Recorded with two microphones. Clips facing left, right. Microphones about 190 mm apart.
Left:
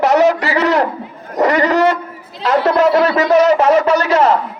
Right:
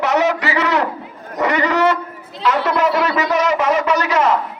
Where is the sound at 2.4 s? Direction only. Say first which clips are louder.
Left 4 dB; 30° left (ahead or behind).